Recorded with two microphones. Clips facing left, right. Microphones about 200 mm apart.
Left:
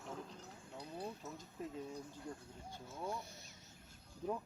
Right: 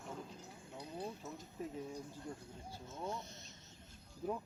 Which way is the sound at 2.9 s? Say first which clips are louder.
Even; 10° left (ahead or behind).